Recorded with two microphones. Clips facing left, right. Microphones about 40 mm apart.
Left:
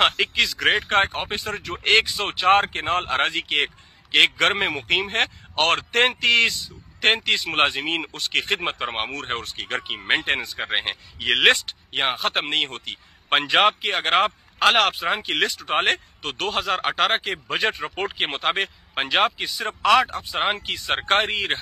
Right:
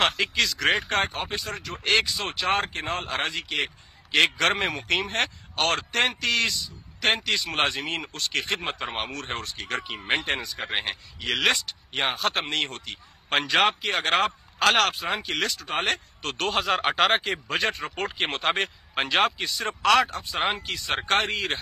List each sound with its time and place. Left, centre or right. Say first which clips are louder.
0.0 s speech: left 3 dB; centre
0.8 s speech: left 5 dB; left
4.1 s speech: left 3 dB; left
5.6 s speech: left 4 dB; left
8.8 s speech: left 4 dB; centre
9.1 s speech: left 4 dB; left
10.7 s speech: left 3 dB; centre
11.1 s speech: left 6 dB; left
12.2 s speech: left 3 dB; left
13.9 s speech: left 3 dB; centre; by 16.0 s left
16.2 s speech: left 1 dB; centre
17.6 s speech: left 4 dB; centre
20.2 s speech: left 3 dB; centre